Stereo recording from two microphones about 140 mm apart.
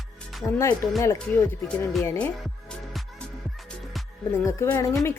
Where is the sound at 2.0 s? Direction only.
15° left (ahead or behind).